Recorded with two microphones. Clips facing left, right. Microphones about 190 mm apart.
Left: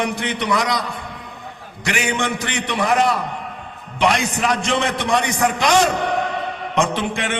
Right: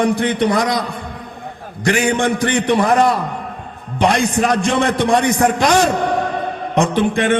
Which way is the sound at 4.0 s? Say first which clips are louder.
Right 4 dB; 55° right (ahead or behind).